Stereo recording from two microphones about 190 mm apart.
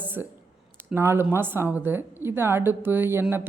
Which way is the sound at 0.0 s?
10° right (ahead or behind).